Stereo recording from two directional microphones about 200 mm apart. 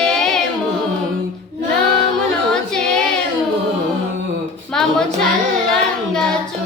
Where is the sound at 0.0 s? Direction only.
5° left (ahead or behind).